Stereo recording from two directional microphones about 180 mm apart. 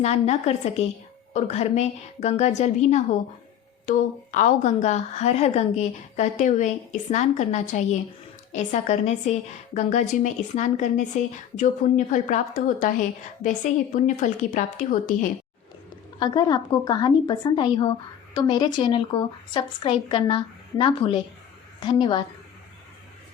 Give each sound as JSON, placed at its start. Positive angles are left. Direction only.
{"t": 0.0, "sound": "a woman's voice", "side_deg": 40}
{"t": 16.2, "sound": "a woman's voice", "side_deg": 20}